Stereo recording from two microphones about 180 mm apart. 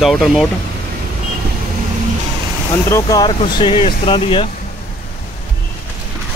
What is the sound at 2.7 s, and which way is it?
Speech, 20° left (ahead or behind).